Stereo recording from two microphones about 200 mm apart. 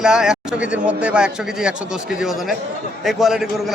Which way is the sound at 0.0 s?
5° right (ahead or behind).